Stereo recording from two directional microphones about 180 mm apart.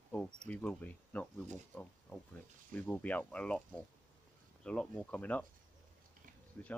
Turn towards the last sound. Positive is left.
turn(degrees=10)  # may be behind; listen again after turning